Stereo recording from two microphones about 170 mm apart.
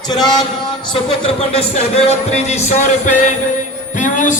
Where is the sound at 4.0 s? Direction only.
50° left (ahead or behind).